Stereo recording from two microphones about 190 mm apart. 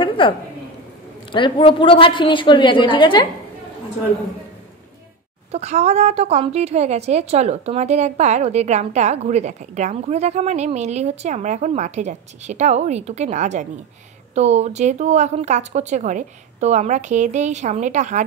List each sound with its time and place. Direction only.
0.2 s a woman's voice: 25° left (ahead or behind)
5.5 s a woman's voice: 35° right (ahead or behind)